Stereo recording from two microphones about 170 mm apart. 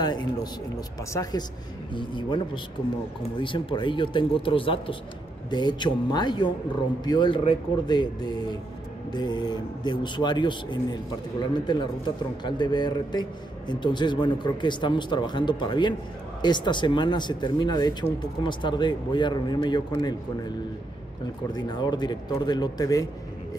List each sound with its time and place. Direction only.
0.0 s a man's voice: 25° left (ahead or behind)